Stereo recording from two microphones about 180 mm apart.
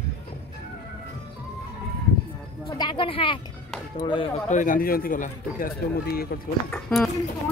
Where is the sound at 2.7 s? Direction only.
25° left (ahead or behind).